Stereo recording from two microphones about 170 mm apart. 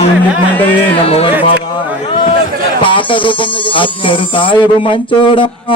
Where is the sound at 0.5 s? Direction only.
10° left (ahead or behind).